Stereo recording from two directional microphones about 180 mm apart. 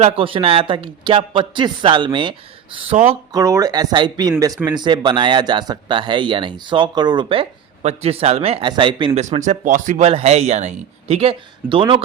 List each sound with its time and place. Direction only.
0.0 s speech: 30° right (ahead or behind)
3.3 s speech: 20° right (ahead or behind)
9.2 s speech: 40° right (ahead or behind)